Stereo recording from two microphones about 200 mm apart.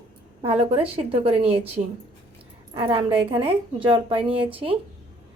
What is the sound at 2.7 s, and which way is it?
A woman's voice, 25° right (ahead or behind).